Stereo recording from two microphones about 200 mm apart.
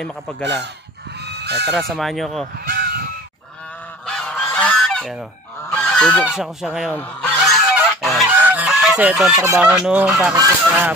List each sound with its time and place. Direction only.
0.4 s speech: 60° right (ahead or behind)
1.2 s fowl: 55° right (ahead or behind)
1.7 s speech: centre (ahead or behind)
2.6 s honk: 50° right (ahead or behind)
4.0 s goose: 5° left (ahead or behind)